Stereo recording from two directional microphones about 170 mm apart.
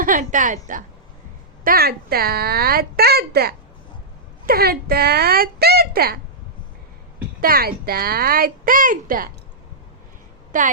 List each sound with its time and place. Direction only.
0.0 s a woman's voice: 50° right (ahead or behind)
1.6 s a woman's voice: 60° right (ahead or behind)
7.4 s a woman's voice: 60° right (ahead or behind)
10.5 s a woman's voice: 50° right (ahead or behind)